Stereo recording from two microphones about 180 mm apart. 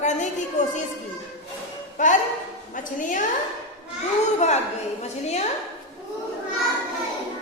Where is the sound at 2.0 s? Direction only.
40° left (ahead or behind).